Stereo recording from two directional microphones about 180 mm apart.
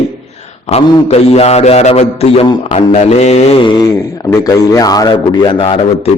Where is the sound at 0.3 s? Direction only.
35° left (ahead or behind).